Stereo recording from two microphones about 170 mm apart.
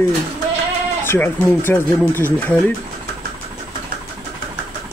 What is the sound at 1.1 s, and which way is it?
Speech, 10° left (ahead or behind).